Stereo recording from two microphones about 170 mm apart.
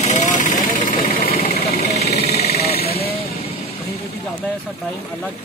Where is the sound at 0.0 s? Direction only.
45° left (ahead or behind).